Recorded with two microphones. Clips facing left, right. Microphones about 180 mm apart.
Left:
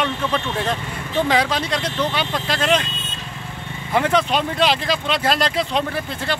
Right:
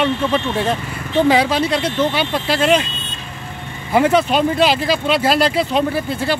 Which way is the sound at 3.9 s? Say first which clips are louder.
Right 4 dB; 5° right (ahead or behind).